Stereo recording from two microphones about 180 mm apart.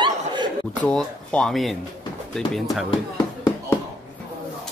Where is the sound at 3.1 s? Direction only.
20° left (ahead or behind).